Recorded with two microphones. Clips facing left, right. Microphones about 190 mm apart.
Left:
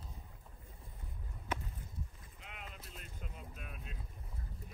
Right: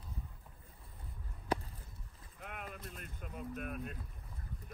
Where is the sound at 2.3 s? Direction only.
55° right (ahead or behind).